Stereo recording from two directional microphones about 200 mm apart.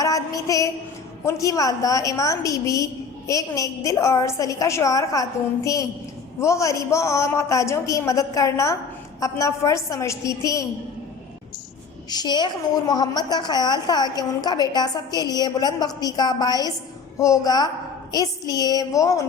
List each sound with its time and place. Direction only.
0.0 s a sound: 15° left (ahead or behind)
1.2 s a woman's voice: 15° left (ahead or behind)
12.1 s a woman's voice: 20° left (ahead or behind)